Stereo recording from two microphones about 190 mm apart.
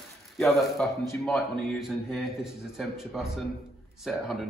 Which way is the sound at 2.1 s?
Centre (ahead or behind).